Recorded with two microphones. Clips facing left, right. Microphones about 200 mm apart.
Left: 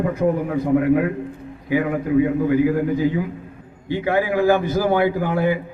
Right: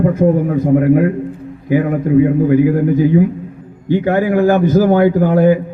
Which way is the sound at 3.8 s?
45° right (ahead or behind).